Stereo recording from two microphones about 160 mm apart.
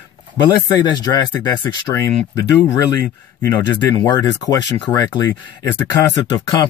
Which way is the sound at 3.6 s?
25° left (ahead or behind).